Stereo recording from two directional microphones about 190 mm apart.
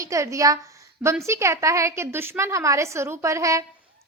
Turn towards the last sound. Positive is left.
turn(degrees=-15)  # may be behind; listen again after turning